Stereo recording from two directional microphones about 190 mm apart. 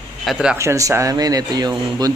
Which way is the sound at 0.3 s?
Centre (ahead or behind).